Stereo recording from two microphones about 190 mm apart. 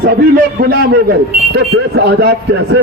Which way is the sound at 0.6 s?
50° right (ahead or behind).